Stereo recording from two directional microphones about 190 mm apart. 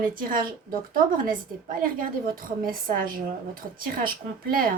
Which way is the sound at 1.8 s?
50° right (ahead or behind).